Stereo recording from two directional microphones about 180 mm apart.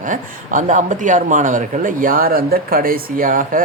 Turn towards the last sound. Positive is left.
turn(degrees=-50)  # may be behind; listen again after turning